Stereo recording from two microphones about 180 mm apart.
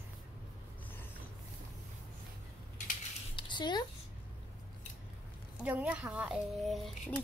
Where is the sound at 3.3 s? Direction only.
25° left (ahead or behind).